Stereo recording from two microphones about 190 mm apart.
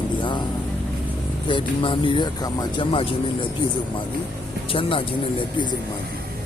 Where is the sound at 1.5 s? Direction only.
25° left (ahead or behind).